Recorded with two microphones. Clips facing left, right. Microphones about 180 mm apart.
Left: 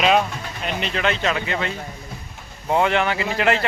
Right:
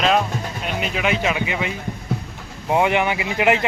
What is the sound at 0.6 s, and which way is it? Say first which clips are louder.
Speech: even; 10° right (ahead or behind).